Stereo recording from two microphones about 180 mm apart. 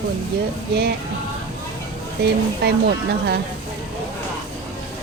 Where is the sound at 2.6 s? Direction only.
65° right (ahead or behind).